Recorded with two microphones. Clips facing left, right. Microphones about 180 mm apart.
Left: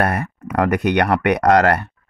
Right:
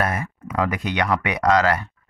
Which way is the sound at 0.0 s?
65° left (ahead or behind).